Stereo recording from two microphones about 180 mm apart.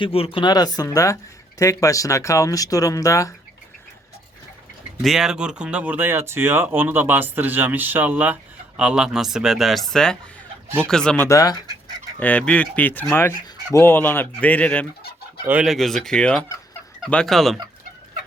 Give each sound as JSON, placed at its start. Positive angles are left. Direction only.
{"t": 0.0, "sound": "speech", "side_deg": 30}
{"t": 5.0, "sound": "speech", "side_deg": -5}
{"t": 11.3, "sound": "speech", "side_deg": 20}
{"t": 12.2, "sound": "speech", "side_deg": 10}
{"t": 15.4, "sound": "speech", "side_deg": -5}